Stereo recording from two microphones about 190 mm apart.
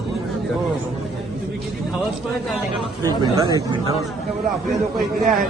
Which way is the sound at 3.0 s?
20° right (ahead or behind).